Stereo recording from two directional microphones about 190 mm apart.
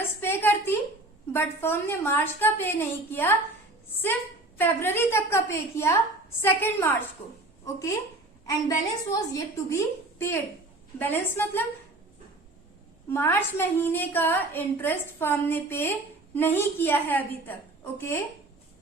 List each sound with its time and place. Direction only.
0.2 s a sound: 10° left (ahead or behind)
1.3 s a woman's voice: 10° left (ahead or behind)
7.2 s a woman's voice: 30° left (ahead or behind)
7.6 s speech: 15° left (ahead or behind)
9.1 s a woman's voice: 15° left (ahead or behind)
13.1 s a woman's voice: 10° left (ahead or behind)